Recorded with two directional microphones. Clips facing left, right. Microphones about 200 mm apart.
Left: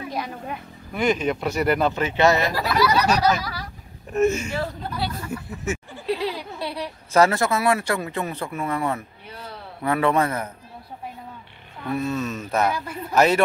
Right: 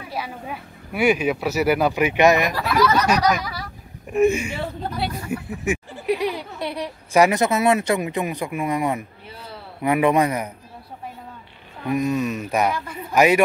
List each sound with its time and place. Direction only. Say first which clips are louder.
0.1 s speech: right 4 dB; 5° right (ahead or behind)
2.5 s speech: right 1 dB; 10° left (ahead or behind)
4.1 s speech: right 2 dB; 10° right (ahead or behind)
11.8 s speech: right 4 dB; 15° right (ahead or behind)